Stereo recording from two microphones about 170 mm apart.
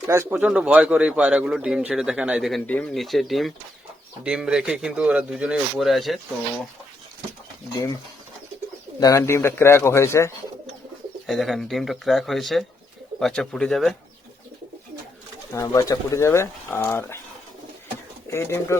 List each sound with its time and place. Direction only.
0.1 s speech: 15° right (ahead or behind)
9.0 s speech: 20° left (ahead or behind)
11.3 s speech: centre (ahead or behind)
15.5 s speech: 20° left (ahead or behind)
18.3 s speech: 15° left (ahead or behind)